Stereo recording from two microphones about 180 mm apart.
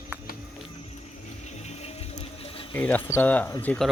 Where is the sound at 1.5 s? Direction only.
35° left (ahead or behind).